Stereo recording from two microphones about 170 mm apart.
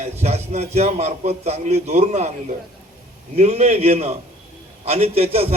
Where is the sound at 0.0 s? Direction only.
40° right (ahead or behind).